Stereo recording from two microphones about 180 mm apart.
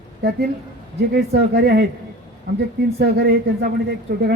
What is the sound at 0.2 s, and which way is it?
Speech, 65° right (ahead or behind).